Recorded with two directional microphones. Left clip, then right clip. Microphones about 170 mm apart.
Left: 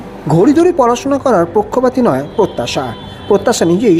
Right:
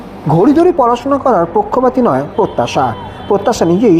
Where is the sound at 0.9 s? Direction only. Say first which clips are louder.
Right 1 dB; 10° left (ahead or behind).